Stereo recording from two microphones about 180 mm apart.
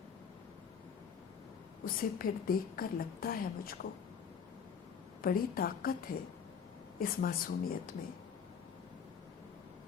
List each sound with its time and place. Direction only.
1.8 s a woman's voice: 55° left (ahead or behind)
5.2 s a woman's voice: 55° left (ahead or behind)